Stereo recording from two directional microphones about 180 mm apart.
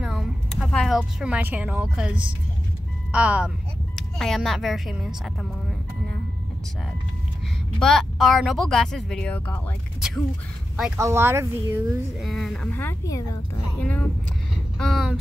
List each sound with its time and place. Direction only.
0.0 s vehicle: centre (ahead or behind)
3.1 s a woman's voice: 5° right (ahead or behind)
7.8 s speech: centre (ahead or behind)
11.0 s speech: 15° right (ahead or behind)
12.2 s speech: centre (ahead or behind)
12.7 s speech: 15° left (ahead or behind)
14.8 s speech: centre (ahead or behind)